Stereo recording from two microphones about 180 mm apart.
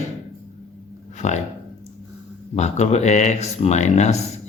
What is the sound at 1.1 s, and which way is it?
Speech, 40° left (ahead or behind).